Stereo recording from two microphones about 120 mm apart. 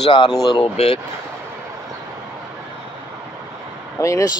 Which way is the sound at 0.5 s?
50° left (ahead or behind).